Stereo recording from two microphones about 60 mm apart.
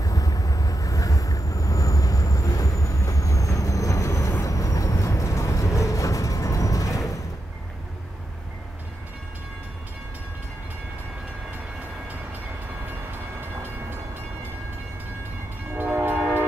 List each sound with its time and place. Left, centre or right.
0.0 s vehicle: left
15.7 s train: right